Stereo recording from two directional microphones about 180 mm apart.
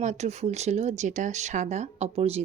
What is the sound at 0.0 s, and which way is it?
Speech, 40° right (ahead or behind).